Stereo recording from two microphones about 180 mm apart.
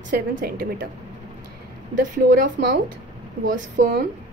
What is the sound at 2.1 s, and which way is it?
A woman's voice, 50° right (ahead or behind).